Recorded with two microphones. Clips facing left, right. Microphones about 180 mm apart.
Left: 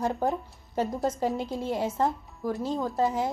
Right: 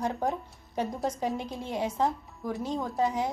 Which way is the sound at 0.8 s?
Centre (ahead or behind).